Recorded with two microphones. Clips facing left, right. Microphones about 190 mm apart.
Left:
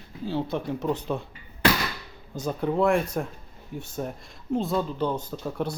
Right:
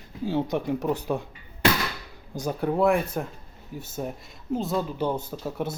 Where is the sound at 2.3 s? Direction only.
10° right (ahead or behind).